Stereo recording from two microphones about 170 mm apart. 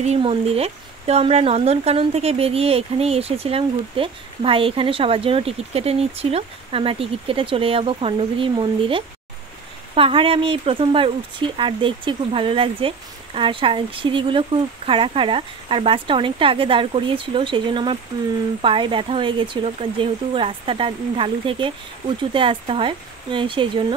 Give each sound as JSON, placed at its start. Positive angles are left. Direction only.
{"t": 0.0, "sound": "speech", "side_deg": -35}